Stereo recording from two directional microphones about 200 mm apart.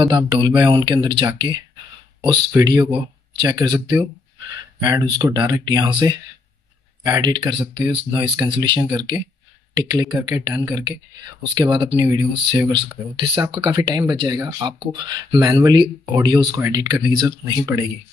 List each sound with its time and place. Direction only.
0.0 s speech: 20° right (ahead or behind)